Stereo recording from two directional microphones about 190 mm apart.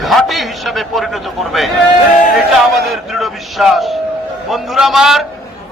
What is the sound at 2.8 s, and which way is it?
A man's voice, centre (ahead or behind).